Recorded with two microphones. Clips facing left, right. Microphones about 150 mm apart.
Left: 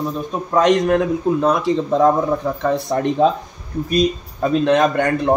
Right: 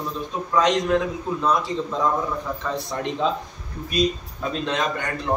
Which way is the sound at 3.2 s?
50° left (ahead or behind).